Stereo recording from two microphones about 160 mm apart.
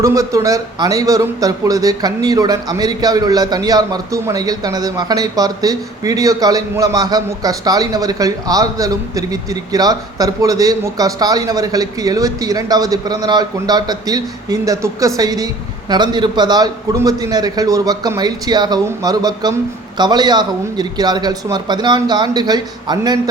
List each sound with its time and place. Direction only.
0.0 s a man's voice: 20° right (ahead or behind)